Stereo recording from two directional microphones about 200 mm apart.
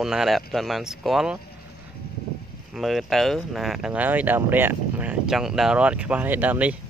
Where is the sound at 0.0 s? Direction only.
Centre (ahead or behind).